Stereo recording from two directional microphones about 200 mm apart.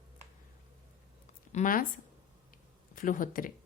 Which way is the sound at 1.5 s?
40° left (ahead or behind).